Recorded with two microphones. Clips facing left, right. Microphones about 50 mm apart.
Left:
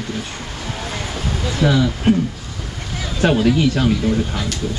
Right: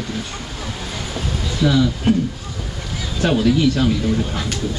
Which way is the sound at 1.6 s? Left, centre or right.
Centre.